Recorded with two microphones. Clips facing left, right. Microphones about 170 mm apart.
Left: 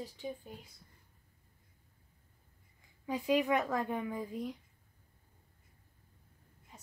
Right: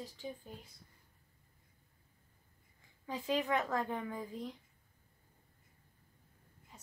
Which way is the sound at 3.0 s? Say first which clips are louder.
Left 5 dB; 15° left (ahead or behind).